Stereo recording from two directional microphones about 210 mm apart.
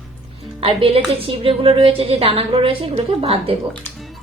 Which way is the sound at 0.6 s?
25° right (ahead or behind).